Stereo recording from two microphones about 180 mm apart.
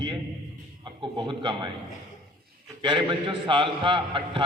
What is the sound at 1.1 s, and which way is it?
Speech, 25° right (ahead or behind).